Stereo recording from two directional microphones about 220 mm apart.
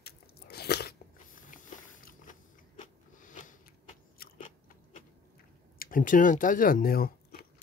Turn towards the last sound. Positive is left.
turn(degrees=40)  # may be behind; listen again after turning